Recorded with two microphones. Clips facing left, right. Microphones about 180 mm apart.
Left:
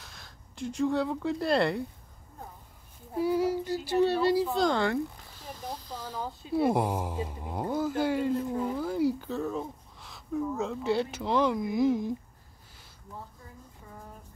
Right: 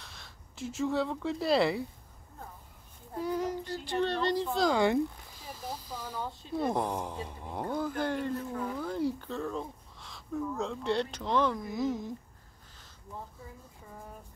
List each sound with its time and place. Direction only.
0.0 s speech: centre (ahead or behind)
3.1 s speech: 5° left (ahead or behind)
4.7 s speech: 20° right (ahead or behind)
5.4 s a sound: 5° right (ahead or behind)
6.0 s speech: 10° left (ahead or behind)
8.7 s speech: 5° left (ahead or behind)